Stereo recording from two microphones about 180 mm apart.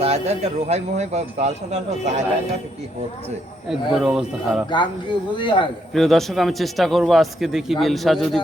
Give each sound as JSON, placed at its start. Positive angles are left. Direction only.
{"t": 0.0, "sound": "speech", "side_deg": -35}
{"t": 3.7, "sound": "speech", "side_deg": -5}
{"t": 5.4, "sound": "a man's voice", "side_deg": 25}
{"t": 5.9, "sound": "speech", "side_deg": 0}